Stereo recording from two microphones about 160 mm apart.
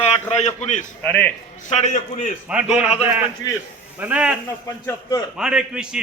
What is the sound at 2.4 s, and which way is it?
Speech, 5° right (ahead or behind).